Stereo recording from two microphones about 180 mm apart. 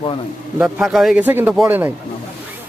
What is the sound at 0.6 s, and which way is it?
A man's voice, 5° right (ahead or behind).